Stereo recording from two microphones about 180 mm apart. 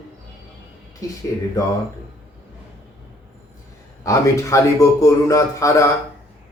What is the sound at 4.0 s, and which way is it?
A man's voice, 15° left (ahead or behind).